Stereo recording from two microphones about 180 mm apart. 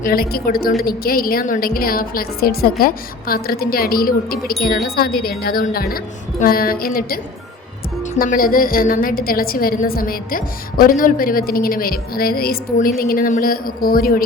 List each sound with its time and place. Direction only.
0.0 s a woman's voice: 55° left (ahead or behind)
8.2 s a woman's voice: 50° left (ahead or behind)